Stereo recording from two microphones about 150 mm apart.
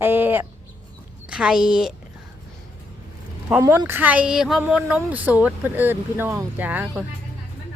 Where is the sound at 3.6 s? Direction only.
20° right (ahead or behind).